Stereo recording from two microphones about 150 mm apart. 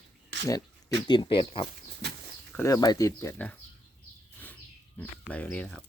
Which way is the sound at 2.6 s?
20° left (ahead or behind).